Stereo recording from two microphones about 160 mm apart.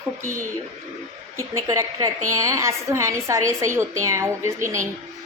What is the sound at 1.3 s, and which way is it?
A woman's voice, 20° right (ahead or behind).